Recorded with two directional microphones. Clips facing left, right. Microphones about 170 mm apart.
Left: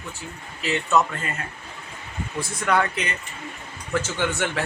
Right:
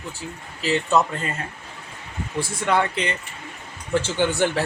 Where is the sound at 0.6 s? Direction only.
35° right (ahead or behind).